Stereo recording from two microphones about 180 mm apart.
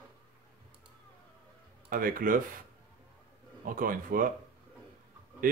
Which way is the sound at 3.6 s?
50° right (ahead or behind).